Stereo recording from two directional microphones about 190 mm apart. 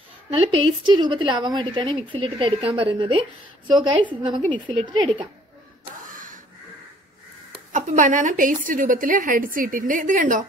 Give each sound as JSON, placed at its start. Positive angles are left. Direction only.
{"t": 0.3, "sound": "a woman's voice", "side_deg": -30}
{"t": 6.0, "sound": "a sound", "side_deg": -45}
{"t": 7.5, "sound": "a woman's voice", "side_deg": -40}